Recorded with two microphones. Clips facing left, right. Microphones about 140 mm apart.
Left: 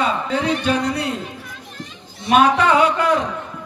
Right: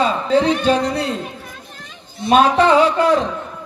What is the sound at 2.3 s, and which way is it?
Speech, 30° right (ahead or behind).